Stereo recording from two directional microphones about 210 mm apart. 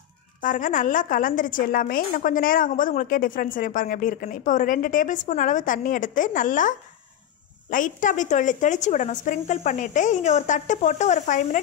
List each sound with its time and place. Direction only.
0.4 s a woman's voice: 40° left (ahead or behind)
7.7 s a woman's voice: 40° left (ahead or behind)